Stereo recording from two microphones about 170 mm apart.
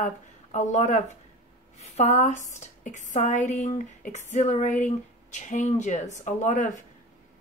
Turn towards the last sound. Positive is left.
turn(degrees=50)  # may be behind; listen again after turning